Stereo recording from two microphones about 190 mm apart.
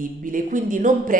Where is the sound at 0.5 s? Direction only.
45° right (ahead or behind).